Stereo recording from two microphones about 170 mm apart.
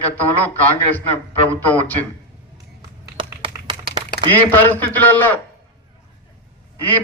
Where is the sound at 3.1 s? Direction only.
30° right (ahead or behind).